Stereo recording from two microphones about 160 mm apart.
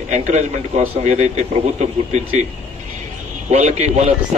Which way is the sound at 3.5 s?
45° right (ahead or behind).